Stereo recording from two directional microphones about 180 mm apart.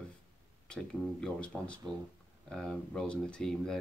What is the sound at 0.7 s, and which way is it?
Speech, 5° left (ahead or behind).